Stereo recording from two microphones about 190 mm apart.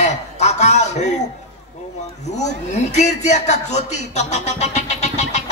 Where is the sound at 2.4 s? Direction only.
35° left (ahead or behind).